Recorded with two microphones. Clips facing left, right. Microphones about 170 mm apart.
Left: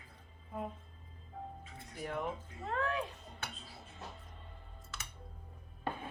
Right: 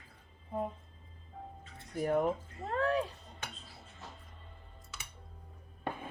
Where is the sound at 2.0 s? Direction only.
45° right (ahead or behind).